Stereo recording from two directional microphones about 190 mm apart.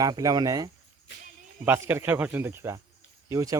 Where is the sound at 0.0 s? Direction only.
20° right (ahead or behind).